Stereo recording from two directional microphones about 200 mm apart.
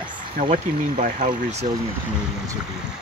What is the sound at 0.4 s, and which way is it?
Speech, 40° right (ahead or behind).